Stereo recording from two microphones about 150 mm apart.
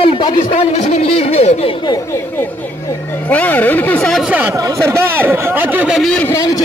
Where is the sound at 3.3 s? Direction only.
10° left (ahead or behind).